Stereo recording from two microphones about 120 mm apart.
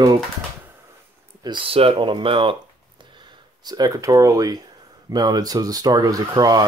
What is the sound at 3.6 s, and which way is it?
Speech, 35° right (ahead or behind).